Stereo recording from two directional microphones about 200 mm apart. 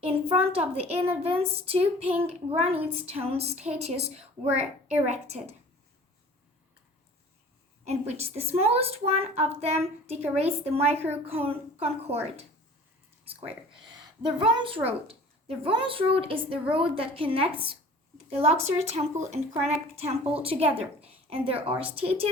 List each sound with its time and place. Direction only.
0.0 s a woman's voice: 30° right (ahead or behind)
7.9 s a woman's voice: 30° right (ahead or behind)
14.2 s a woman's voice: 25° right (ahead or behind)